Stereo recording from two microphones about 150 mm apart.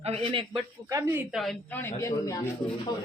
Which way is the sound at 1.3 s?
Centre (ahead or behind).